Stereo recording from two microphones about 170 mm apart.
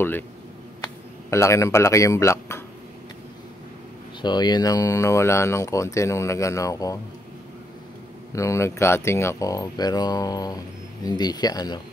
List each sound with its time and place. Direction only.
1.3 s speech: 15° left (ahead or behind)
4.2 s speech: 25° left (ahead or behind)
8.4 s speech: 15° left (ahead or behind)